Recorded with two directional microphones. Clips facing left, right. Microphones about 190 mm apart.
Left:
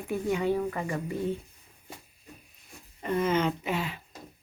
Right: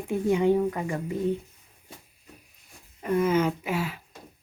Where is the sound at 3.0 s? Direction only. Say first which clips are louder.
Right 3 dB; 5° right (ahead or behind).